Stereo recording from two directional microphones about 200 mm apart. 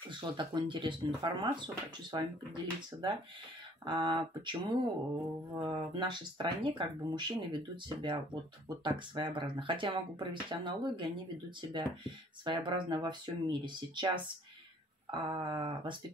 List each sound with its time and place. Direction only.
0.2 s speech: 25° right (ahead or behind)